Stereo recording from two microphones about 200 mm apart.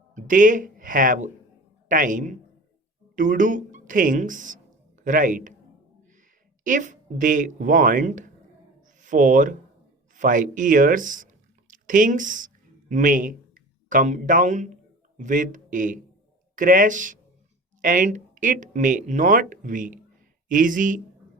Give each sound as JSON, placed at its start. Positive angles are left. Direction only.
{"t": 0.1, "sound": "speech", "side_deg": -40}
{"t": 6.7, "sound": "speech", "side_deg": -40}